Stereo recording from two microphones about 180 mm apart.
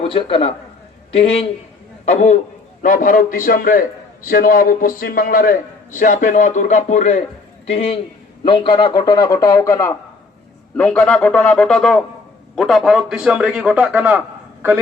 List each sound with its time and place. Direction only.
0.0 s a man's voice: 30° left (ahead or behind); by 14.2 s 10° right (ahead or behind)